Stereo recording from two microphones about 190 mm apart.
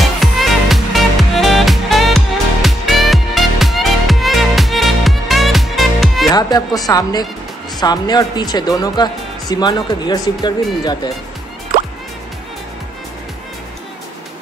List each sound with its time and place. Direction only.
0.0 s music: centre (ahead or behind)
6.3 s speech: 20° left (ahead or behind)